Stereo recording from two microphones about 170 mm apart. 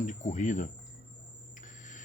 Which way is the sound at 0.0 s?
45° left (ahead or behind).